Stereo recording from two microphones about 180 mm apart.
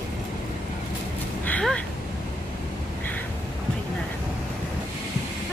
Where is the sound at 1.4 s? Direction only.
5° left (ahead or behind).